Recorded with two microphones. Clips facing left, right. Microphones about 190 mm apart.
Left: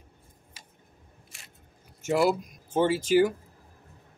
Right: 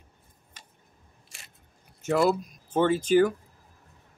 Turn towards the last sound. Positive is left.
turn(degrees=10)  # may be behind; listen again after turning